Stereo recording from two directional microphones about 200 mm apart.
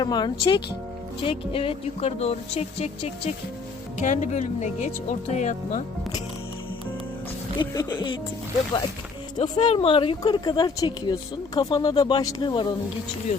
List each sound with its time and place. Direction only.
0.0 s speech: 20° left (ahead or behind)
1.2 s music: 30° left (ahead or behind)
7.6 s speech: 20° left (ahead or behind)
9.4 s speech: 25° left (ahead or behind)